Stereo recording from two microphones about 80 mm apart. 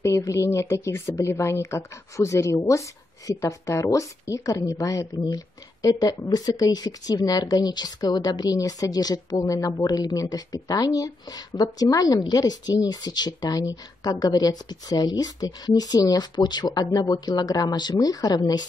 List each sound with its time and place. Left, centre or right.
0.0 s a woman's voice: left
17.9 s speech: left